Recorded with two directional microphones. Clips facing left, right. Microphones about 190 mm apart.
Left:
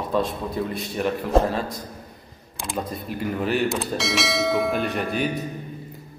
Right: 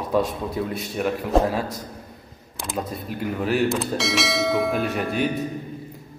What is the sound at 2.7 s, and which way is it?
Speech, centre (ahead or behind).